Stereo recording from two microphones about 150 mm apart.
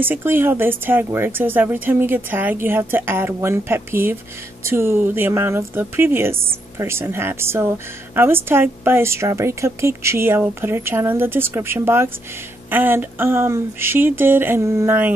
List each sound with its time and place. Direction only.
0.0 s a woman's voice: 15° right (ahead or behind)